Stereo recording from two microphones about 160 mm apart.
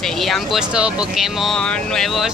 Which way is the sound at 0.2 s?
Centre (ahead or behind).